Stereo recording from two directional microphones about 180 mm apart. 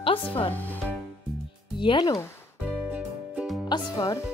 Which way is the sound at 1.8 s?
25° left (ahead or behind).